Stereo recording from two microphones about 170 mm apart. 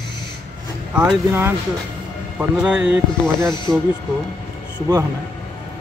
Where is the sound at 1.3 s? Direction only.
15° right (ahead or behind).